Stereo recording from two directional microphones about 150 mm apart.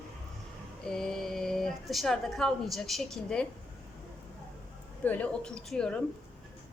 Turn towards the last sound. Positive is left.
turn(degrees=5)  # may be behind; listen again after turning